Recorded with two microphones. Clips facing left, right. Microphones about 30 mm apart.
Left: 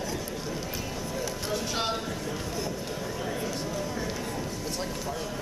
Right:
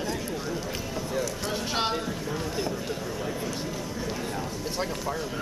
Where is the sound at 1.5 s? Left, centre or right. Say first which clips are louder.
Right 1 dB; centre.